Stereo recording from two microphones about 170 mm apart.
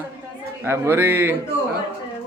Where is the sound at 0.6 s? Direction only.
15° right (ahead or behind).